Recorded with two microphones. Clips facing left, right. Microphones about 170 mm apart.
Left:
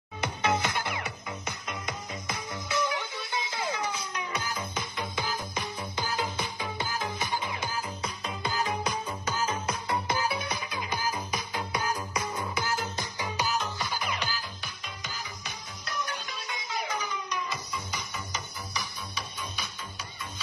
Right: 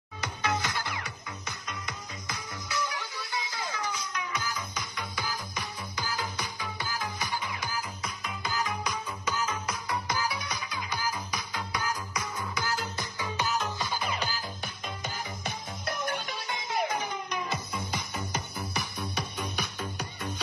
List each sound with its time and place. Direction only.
0.2 s music: 25° left (ahead or behind)
10.9 s music: 10° left (ahead or behind)
11.8 s music: 30° left (ahead or behind)
14.0 s music: 30° right (ahead or behind)
15.4 s music: 55° right (ahead or behind)